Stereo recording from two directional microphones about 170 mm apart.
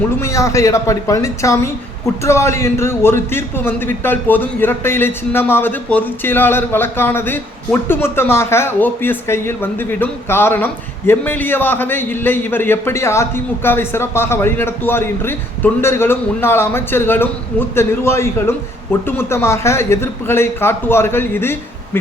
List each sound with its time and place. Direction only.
0.2 s a man's voice: 15° left (ahead or behind)